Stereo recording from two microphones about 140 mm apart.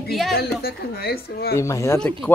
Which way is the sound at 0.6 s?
90° left.